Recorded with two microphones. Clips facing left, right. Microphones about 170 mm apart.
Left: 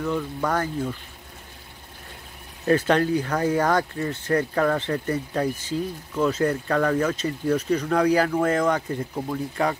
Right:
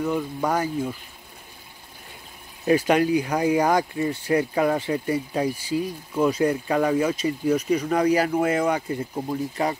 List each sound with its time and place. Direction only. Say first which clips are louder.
0.0 s speech: right 1 dB; 10° right (ahead or behind)
2.6 s speech: right 1 dB; 10° right (ahead or behind)
9.3 s speech: even; 20° right (ahead or behind)